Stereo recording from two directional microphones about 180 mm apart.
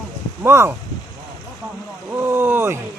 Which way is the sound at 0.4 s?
15° right (ahead or behind).